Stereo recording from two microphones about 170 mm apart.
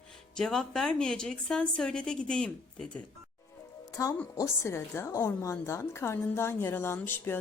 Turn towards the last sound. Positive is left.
turn(degrees=10)  # may be behind; listen again after turning